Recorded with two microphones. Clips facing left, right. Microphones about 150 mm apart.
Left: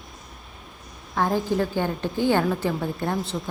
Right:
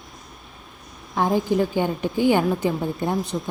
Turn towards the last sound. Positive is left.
turn(degrees=-15)  # may be behind; listen again after turning